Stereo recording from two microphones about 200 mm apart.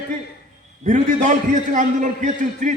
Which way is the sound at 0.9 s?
40° right (ahead or behind).